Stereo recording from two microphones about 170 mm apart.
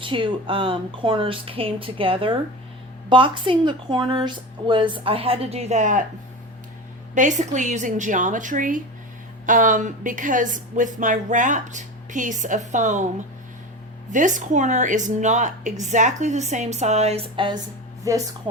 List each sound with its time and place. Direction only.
0.0 s a woman's voice: 30° right (ahead or behind); by 6.1 s 50° right (ahead or behind)
7.1 s a woman's voice: 45° right (ahead or behind)
14.1 s a woman's voice: 50° right (ahead or behind); by 18.2 s 20° right (ahead or behind)